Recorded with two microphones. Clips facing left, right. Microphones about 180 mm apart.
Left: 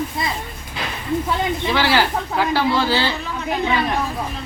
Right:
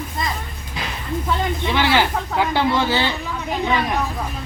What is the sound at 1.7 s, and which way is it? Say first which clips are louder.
Speech: even; 20° right (ahead or behind).